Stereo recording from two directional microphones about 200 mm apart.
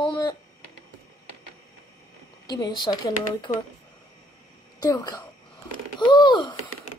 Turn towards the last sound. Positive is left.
turn(degrees=25)  # may be behind; listen again after turning